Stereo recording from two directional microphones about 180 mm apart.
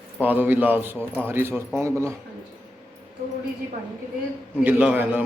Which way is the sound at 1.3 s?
10° right (ahead or behind).